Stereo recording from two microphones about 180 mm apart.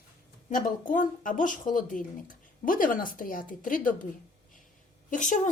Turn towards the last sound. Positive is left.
turn(degrees=45)  # may be behind; listen again after turning